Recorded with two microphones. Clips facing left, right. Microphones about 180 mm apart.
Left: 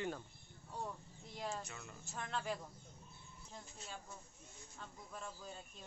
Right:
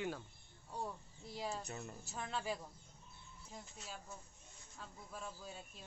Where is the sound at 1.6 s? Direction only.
40° right (ahead or behind).